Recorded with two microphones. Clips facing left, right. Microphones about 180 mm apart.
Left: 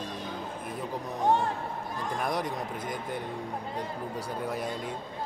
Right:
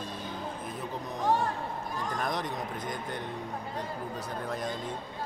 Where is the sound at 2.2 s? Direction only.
10° left (ahead or behind).